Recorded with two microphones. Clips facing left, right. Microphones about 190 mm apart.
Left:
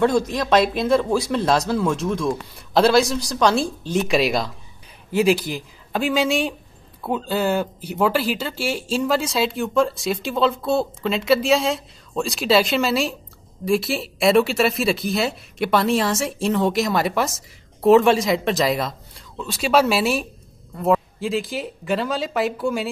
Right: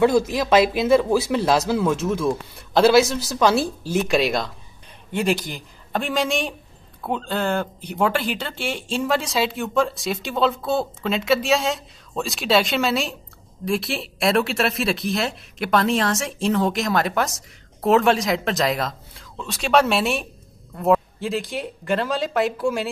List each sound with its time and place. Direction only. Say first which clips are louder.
0.0 s speech: right 1 dB; 5° right (ahead or behind)